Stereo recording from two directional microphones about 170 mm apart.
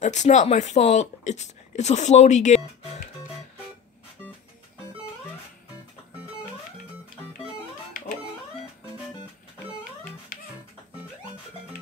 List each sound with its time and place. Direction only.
0.0 s speech: 45° left (ahead or behind)
10.3 s music: 50° left (ahead or behind)